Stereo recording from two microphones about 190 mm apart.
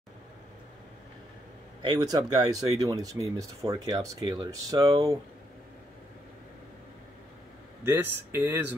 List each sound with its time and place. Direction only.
1.8 s speech: 20° right (ahead or behind)
7.8 s speech: 10° right (ahead or behind)